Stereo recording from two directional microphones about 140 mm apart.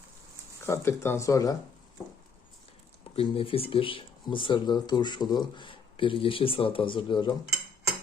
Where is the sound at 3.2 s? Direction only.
40° left (ahead or behind).